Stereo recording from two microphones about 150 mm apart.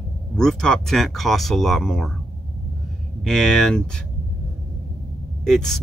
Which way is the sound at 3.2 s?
5° left (ahead or behind).